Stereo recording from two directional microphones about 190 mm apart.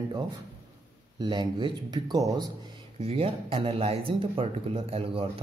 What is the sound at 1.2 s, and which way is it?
A man's voice, 25° right (ahead or behind).